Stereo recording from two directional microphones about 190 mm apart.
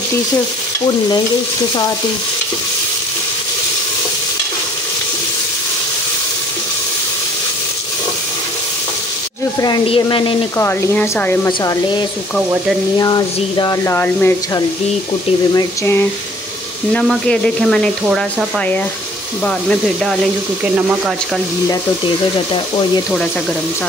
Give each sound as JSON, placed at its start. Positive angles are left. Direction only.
{"t": 9.6, "sound": "speech", "side_deg": 25}
{"t": 10.6, "sound": "speech", "side_deg": 10}
{"t": 13.0, "sound": "speech", "side_deg": 20}
{"t": 19.4, "sound": "speech", "side_deg": 5}
{"t": 21.6, "sound": "speech", "side_deg": 25}